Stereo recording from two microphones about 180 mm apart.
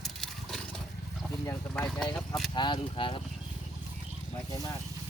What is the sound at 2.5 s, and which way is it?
Speech, 25° left (ahead or behind).